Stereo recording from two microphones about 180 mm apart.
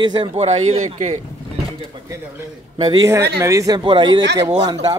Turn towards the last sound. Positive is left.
turn(degrees=-30)  # may be behind; listen again after turning